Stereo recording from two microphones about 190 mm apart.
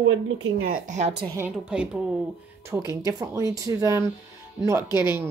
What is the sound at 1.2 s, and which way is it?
Speech, 15° right (ahead or behind).